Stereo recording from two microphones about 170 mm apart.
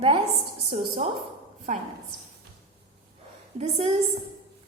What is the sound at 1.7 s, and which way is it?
Speech, 50° right (ahead or behind).